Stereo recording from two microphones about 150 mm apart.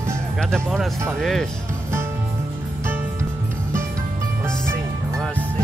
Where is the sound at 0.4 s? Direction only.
5° left (ahead or behind).